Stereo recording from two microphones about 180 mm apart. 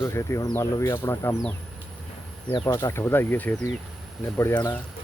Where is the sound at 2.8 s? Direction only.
15° left (ahead or behind).